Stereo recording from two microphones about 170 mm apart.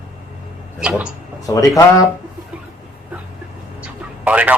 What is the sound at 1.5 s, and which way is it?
Speech, 20° left (ahead or behind).